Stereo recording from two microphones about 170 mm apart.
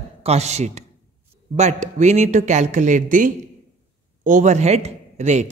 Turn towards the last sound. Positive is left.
turn(degrees=-40)  # may be behind; listen again after turning